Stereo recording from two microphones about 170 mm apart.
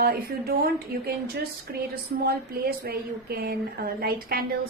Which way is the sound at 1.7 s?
75° right (ahead or behind).